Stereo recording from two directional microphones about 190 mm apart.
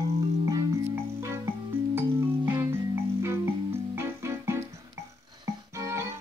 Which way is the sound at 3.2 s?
15° right (ahead or behind).